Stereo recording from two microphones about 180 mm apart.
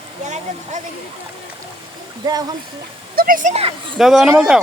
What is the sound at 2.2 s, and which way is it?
Speech, 20° right (ahead or behind).